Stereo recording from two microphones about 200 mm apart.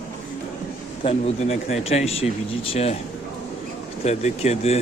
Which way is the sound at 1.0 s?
30° left (ahead or behind).